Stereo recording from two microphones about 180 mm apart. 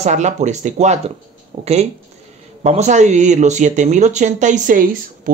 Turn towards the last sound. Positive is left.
turn(degrees=-50)  # may be behind; listen again after turning